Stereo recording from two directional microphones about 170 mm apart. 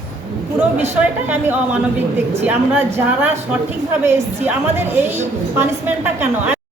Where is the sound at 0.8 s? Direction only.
10° right (ahead or behind).